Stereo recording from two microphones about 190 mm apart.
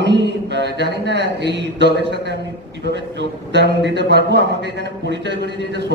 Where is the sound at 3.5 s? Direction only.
65° right (ahead or behind).